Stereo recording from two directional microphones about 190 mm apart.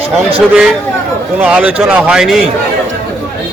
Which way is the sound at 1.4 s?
5° right (ahead or behind).